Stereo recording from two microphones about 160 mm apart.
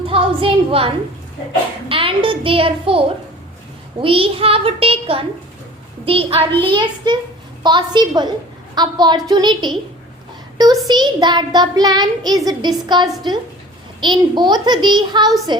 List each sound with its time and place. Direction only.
0.0 s a woman's voice: 35° right (ahead or behind)
1.9 s a child's voice: 35° right (ahead or behind)
4.0 s a child's voice: 35° right (ahead or behind)
7.6 s child singing: 30° right (ahead or behind)